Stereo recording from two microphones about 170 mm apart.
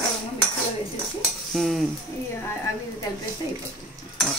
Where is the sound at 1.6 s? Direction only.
Centre (ahead or behind).